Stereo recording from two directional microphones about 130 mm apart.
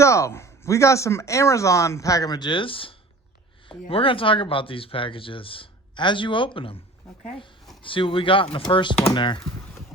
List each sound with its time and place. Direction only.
0.0 s speech: 20° left (ahead or behind); by 6.7 s 40° left (ahead or behind)
7.8 s speech: 40° left (ahead or behind)